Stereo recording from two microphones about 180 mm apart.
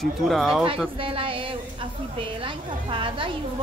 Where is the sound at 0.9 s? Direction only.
30° right (ahead or behind).